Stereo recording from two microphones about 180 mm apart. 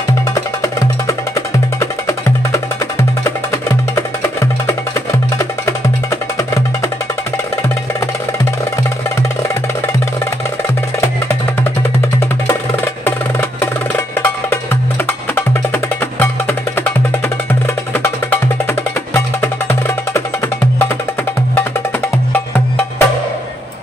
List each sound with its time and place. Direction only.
0.3 s music: 15° left (ahead or behind)
6.3 s music: 15° left (ahead or behind)
11.0 s music: 15° left (ahead or behind)
13.0 s music: 15° left (ahead or behind)
18.7 s music: 10° left (ahead or behind)
22.3 s music: 10° left (ahead or behind)